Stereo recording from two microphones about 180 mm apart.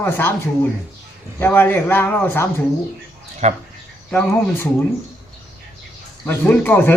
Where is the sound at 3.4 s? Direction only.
35° right (ahead or behind).